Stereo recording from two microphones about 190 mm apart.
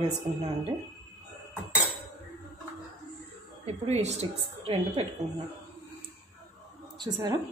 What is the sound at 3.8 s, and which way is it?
A woman's voice, 35° right (ahead or behind).